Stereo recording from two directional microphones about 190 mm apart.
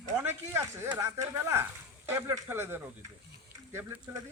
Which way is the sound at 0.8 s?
15° right (ahead or behind).